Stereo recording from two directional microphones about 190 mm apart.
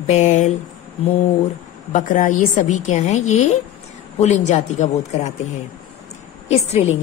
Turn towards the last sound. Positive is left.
turn(degrees=35)  # may be behind; listen again after turning